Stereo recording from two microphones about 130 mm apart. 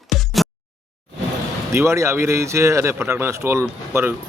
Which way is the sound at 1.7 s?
20° right (ahead or behind).